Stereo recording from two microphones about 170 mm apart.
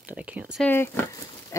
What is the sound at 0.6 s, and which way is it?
Speech, 15° left (ahead or behind).